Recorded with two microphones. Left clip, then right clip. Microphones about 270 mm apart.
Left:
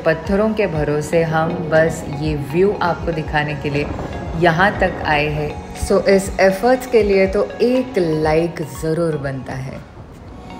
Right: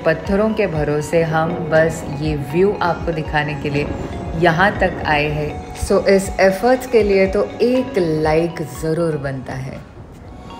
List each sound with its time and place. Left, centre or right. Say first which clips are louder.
0.0 s a woman's voice: even; centre